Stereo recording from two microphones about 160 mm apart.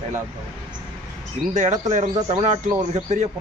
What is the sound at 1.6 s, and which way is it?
Speech, 45° right (ahead or behind).